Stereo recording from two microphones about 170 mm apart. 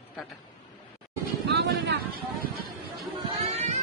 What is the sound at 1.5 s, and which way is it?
Speech, 85° right.